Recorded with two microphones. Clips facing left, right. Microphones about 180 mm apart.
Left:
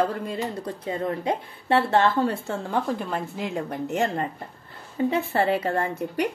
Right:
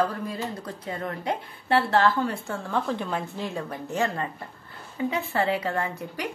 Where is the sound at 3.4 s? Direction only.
15° left (ahead or behind).